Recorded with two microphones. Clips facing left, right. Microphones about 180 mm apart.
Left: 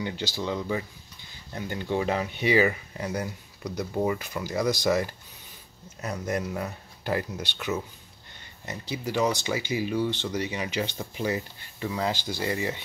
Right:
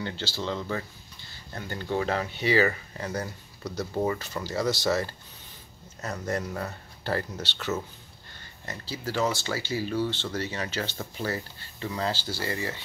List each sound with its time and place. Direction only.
0.0 s speech: 15° left (ahead or behind)